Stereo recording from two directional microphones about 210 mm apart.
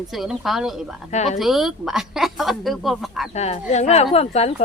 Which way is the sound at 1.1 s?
35° left (ahead or behind).